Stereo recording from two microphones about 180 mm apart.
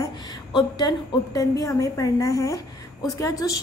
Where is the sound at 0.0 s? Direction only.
20° left (ahead or behind).